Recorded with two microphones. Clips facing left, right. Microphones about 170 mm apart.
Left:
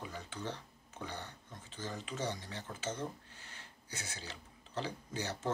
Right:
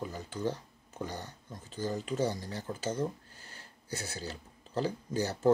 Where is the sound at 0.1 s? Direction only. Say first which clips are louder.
Right 8 dB; 40° right (ahead or behind).